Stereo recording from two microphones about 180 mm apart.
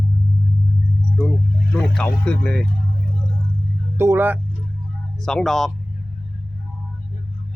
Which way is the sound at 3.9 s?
15° right (ahead or behind).